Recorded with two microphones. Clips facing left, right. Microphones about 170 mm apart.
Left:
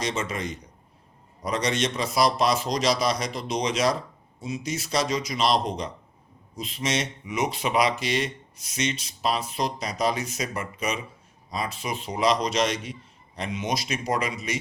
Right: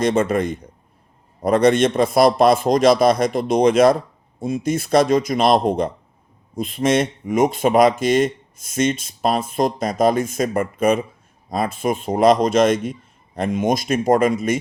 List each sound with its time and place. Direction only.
0.0 s a man's voice: 55° right (ahead or behind)